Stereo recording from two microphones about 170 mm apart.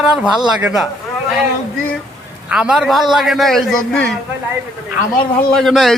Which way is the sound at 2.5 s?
5° right (ahead or behind).